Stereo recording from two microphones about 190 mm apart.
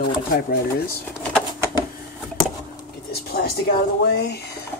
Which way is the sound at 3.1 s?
55° left (ahead or behind).